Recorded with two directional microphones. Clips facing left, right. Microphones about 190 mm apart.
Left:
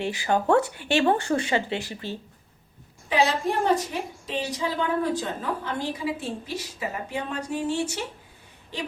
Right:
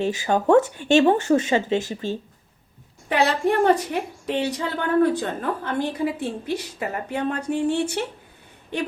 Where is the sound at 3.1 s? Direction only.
60° right (ahead or behind).